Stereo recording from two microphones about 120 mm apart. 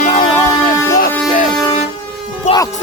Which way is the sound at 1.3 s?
90° left.